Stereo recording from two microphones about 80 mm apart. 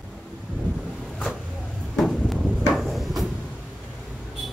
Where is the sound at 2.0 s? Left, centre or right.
Centre.